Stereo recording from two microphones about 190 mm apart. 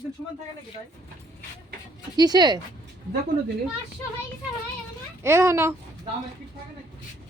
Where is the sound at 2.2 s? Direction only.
20° right (ahead or behind).